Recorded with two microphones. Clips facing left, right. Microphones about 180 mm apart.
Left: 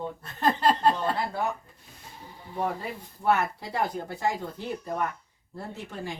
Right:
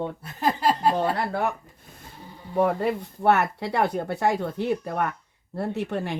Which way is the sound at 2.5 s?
70° right (ahead or behind).